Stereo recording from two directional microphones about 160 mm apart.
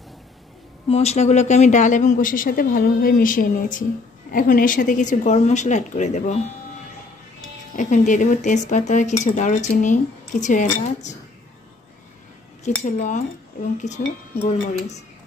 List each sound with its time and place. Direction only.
0.8 s speech: 40° left (ahead or behind)
7.7 s speech: 50° left (ahead or behind)
12.8 s speech: 50° left (ahead or behind)